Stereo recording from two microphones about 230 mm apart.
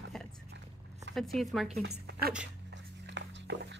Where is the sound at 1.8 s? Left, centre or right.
Right.